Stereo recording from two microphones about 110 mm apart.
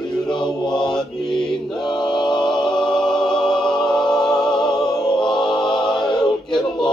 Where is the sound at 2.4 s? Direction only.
5° left (ahead or behind).